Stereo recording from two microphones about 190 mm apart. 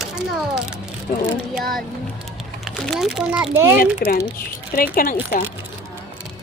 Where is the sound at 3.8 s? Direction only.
50° left (ahead or behind).